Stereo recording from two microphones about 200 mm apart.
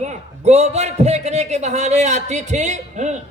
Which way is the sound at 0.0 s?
35° right (ahead or behind).